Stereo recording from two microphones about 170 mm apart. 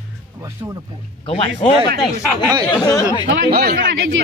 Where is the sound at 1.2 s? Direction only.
35° left (ahead or behind).